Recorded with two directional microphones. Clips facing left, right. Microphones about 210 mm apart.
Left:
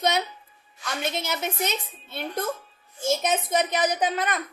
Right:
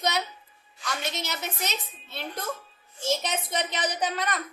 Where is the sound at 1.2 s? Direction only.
55° left (ahead or behind).